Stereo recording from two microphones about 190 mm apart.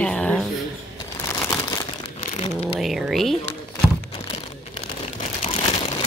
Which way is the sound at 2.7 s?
Centre (ahead or behind).